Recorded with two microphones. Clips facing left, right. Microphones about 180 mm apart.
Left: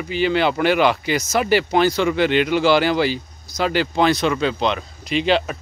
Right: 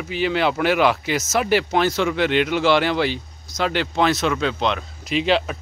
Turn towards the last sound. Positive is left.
turn(degrees=0)  # may be behind; listen again after turning